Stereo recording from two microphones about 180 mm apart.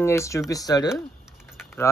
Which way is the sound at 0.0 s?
15° left (ahead or behind).